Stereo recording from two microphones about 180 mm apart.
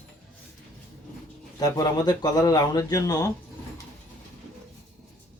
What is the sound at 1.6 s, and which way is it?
Speech, 20° left (ahead or behind).